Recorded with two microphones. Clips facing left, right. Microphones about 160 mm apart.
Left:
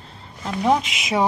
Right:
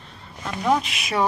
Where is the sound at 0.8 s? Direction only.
90° left.